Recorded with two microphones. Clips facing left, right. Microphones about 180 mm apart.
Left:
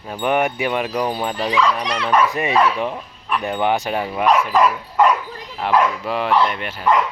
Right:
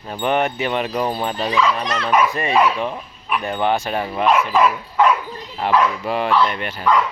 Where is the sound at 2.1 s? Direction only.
10° right (ahead or behind).